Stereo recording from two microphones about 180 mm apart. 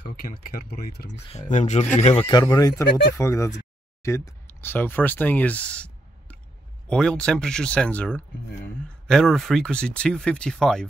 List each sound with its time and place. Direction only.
0.0 s speech: 55° left (ahead or behind)
1.3 s speech: 45° left (ahead or behind)
2.2 s speech: 20° left (ahead or behind); by 10.9 s 5° left (ahead or behind)